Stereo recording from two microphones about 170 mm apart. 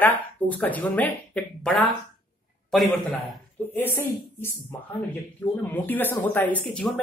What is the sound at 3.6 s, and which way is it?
Speech, 10° left (ahead or behind).